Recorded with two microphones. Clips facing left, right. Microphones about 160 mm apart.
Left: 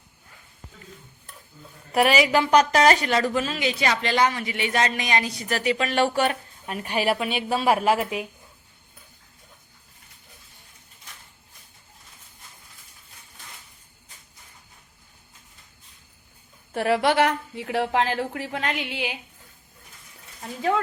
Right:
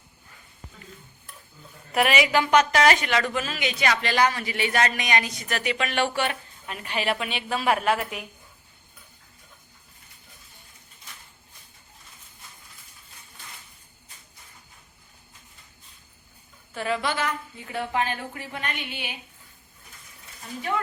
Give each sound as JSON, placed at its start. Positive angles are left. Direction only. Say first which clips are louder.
{"t": 2.0, "sound": "a woman's voice", "louder": "left 2 dB", "side_deg": 35}
{"t": 6.8, "sound": "a woman's voice", "louder": "left 4 dB", "side_deg": 10}
{"t": 16.7, "sound": "a woman's voice", "louder": "left 7 dB", "side_deg": 65}